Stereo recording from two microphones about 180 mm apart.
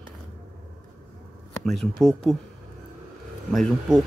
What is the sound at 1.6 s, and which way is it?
Speech, centre (ahead or behind).